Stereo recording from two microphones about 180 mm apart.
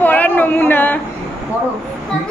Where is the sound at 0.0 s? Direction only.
10° left (ahead or behind).